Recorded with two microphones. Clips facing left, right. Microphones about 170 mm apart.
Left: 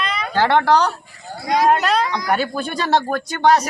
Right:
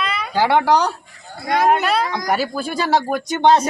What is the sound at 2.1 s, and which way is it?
Speech, 45° right (ahead or behind).